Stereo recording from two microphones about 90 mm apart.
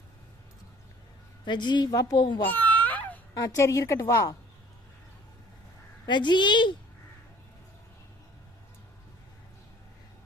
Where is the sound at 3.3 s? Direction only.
45° left (ahead or behind).